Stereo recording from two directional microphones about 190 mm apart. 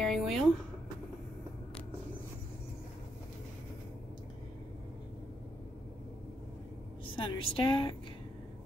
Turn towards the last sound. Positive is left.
turn(degrees=25)  # may be behind; listen again after turning